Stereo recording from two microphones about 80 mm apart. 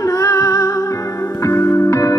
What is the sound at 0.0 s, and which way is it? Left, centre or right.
Music, left.